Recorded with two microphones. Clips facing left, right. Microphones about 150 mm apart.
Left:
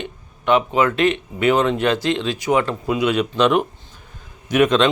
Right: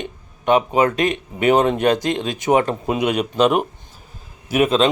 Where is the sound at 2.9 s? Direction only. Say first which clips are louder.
Left 1 dB; 20° right (ahead or behind).